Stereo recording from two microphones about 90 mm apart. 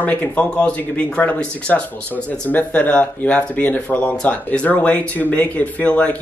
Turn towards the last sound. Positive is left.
turn(degrees=15)  # may be behind; listen again after turning